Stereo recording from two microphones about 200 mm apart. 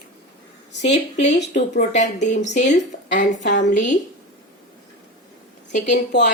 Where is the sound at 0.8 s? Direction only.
60° left (ahead or behind).